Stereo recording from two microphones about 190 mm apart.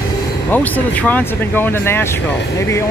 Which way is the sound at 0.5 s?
10° left (ahead or behind).